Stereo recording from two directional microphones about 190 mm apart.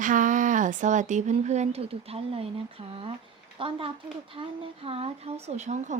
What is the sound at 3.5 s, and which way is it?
A woman's voice, 30° right (ahead or behind).